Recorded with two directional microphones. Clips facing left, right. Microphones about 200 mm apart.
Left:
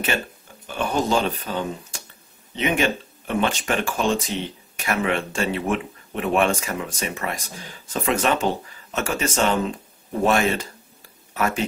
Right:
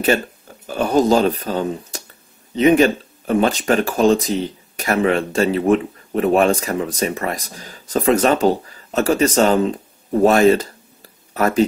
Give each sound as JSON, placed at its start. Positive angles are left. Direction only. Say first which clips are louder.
{"t": 0.7, "sound": "speech", "louder": "right 8 dB", "side_deg": -40}